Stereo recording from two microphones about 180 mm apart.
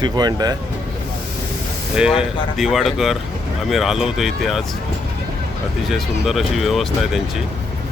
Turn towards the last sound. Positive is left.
turn(degrees=0)  # may be behind; listen again after turning